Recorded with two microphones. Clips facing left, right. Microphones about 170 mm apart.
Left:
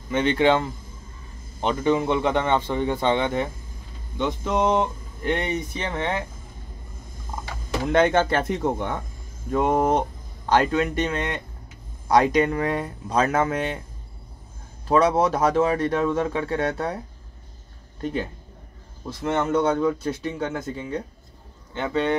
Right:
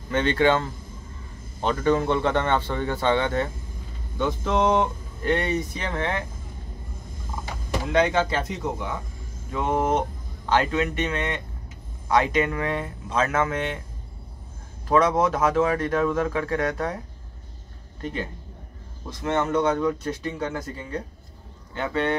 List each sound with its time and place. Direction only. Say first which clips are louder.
0.1 s a man's voice: left 1 dB; 15° left (ahead or behind)
7.9 s speech: left 3 dB; 55° left (ahead or behind)
9.5 s speech: left 3 dB; 40° left (ahead or behind)
14.9 s speech: left 1 dB; 30° left (ahead or behind)
19.2 s a man's voice: left 1 dB; 10° left (ahead or behind)
19.5 s speech: left 3 dB; 30° left (ahead or behind)